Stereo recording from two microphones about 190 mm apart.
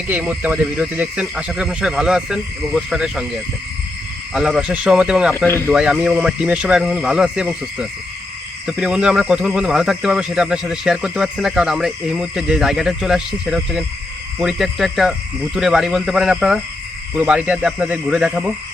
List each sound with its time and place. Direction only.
0.1 s speech: 10° right (ahead or behind)
5.5 s speech: 10° left (ahead or behind)
5.7 s speech: 5° right (ahead or behind)